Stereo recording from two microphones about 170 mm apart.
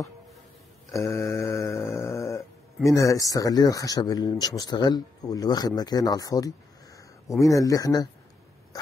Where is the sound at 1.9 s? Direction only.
15° left (ahead or behind).